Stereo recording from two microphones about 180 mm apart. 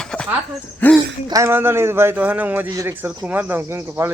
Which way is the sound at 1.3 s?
15° right (ahead or behind).